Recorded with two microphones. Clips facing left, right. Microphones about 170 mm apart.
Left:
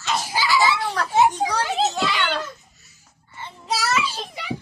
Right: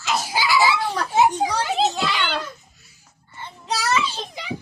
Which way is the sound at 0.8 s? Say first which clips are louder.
Even; 5° right (ahead or behind).